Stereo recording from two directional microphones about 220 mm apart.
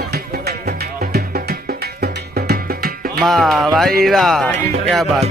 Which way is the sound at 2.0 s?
45° right (ahead or behind).